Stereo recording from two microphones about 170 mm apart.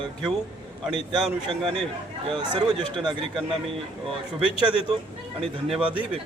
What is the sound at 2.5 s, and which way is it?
Speech, 25° right (ahead or behind).